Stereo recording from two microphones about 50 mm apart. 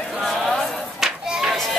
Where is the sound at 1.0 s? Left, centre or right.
Centre.